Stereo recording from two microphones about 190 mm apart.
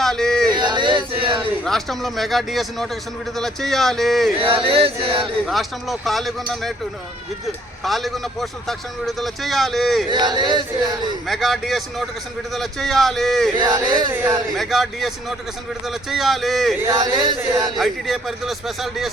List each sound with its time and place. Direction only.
0.0 s a sound: 5° left (ahead or behind)
0.5 s a sound: 25° right (ahead or behind)
1.6 s a man's voice: centre (ahead or behind)
4.4 s male singing: 30° right (ahead or behind)
5.5 s a man's voice: centre (ahead or behind)
10.1 s male singing: 20° right (ahead or behind)
11.3 s a man's voice: centre (ahead or behind)
13.6 s male singing: 20° right (ahead or behind)
14.1 s speech: 10° right (ahead or behind)
14.5 s a man's voice: centre (ahead or behind)
16.8 s speech: 15° right (ahead or behind)
17.7 s a man's voice: centre (ahead or behind)